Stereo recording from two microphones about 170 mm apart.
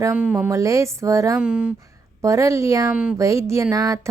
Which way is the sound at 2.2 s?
15° right (ahead or behind).